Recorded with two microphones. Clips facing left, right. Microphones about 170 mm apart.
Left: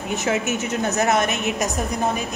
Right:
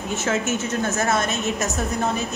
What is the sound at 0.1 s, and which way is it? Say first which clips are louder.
A woman's voice: left 1 dB; 15° left (ahead or behind).